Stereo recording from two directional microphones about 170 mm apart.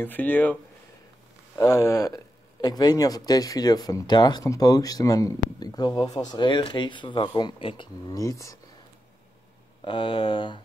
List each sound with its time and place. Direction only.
0.0 s speech: 10° left (ahead or behind)
1.6 s speech: 20° left (ahead or behind)
9.8 s speech: 30° left (ahead or behind)